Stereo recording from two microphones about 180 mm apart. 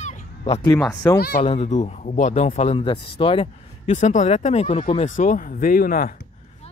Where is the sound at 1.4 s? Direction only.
40° left (ahead or behind).